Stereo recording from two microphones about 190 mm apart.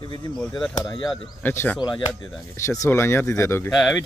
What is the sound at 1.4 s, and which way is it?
Speech, 10° left (ahead or behind).